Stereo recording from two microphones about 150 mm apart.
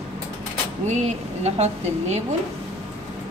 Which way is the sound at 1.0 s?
50° right (ahead or behind).